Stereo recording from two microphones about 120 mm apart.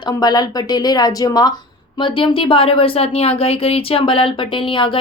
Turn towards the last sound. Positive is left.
turn(degrees=45)  # may be behind; listen again after turning